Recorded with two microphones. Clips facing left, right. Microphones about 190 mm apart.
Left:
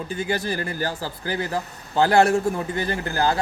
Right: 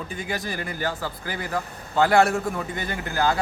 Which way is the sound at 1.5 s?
30° left (ahead or behind).